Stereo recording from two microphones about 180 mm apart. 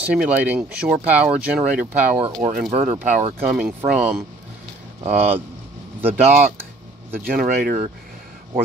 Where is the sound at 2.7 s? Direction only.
45° right (ahead or behind).